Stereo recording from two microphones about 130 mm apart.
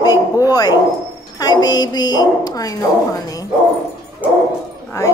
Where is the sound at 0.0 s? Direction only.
30° left (ahead or behind).